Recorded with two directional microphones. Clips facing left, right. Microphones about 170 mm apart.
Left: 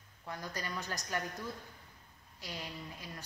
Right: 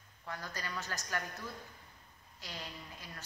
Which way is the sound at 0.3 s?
15° left (ahead or behind).